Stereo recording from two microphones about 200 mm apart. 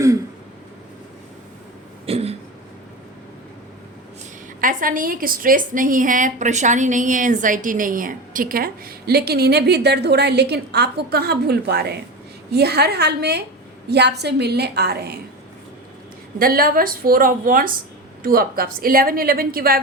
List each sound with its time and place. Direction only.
2.0 s throat clearing: 30° right (ahead or behind)
4.6 s a woman's voice: 40° right (ahead or behind)
16.4 s a woman's voice: 45° right (ahead or behind)